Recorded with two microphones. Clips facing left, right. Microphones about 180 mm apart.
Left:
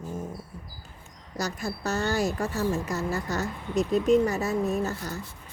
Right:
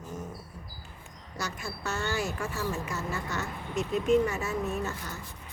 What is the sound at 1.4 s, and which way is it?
A woman's voice, 40° left (ahead or behind).